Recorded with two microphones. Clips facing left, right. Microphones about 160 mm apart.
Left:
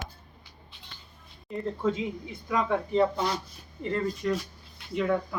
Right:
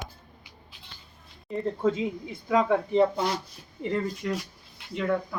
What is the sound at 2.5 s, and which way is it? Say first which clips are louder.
Speech: right 4 dB; 20° right (ahead or behind).